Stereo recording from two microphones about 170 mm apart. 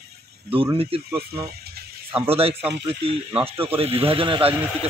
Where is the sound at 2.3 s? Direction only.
35° right (ahead or behind).